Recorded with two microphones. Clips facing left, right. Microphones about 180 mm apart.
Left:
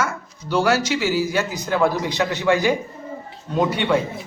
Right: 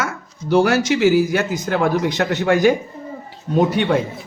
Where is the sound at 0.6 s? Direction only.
55° right (ahead or behind).